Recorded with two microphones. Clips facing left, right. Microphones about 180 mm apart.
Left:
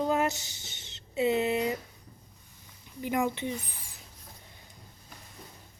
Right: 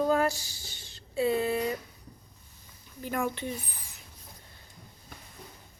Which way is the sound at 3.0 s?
15° left (ahead or behind).